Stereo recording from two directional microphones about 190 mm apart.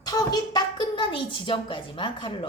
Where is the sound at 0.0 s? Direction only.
20° left (ahead or behind).